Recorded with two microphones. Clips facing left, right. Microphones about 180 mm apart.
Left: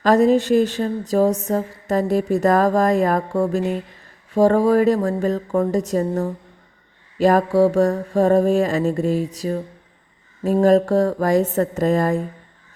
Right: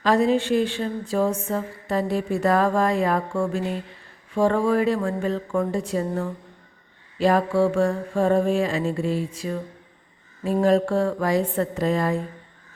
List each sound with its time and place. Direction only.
0.0 s speech: 45° left (ahead or behind)
4.4 s mantra: 40° left (ahead or behind)
10.4 s speech: 45° left (ahead or behind)